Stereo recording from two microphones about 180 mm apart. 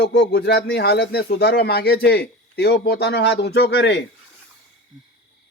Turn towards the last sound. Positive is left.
turn(degrees=70)  # may be behind; listen again after turning